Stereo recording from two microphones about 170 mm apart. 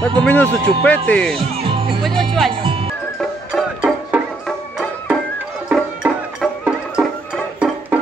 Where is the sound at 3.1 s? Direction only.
Centre (ahead or behind).